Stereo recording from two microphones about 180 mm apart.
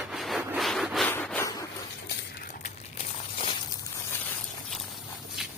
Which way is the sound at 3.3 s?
30° left (ahead or behind).